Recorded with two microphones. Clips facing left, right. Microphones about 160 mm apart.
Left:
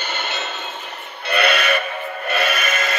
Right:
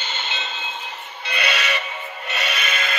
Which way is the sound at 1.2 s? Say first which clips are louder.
Left 7 dB; 60° left (ahead or behind).